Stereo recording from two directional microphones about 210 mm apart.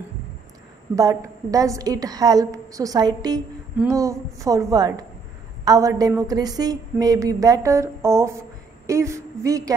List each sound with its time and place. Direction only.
0.9 s a woman's voice: 15° right (ahead or behind)